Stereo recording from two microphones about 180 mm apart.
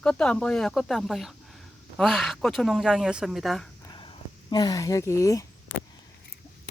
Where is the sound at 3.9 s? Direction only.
25° left (ahead or behind).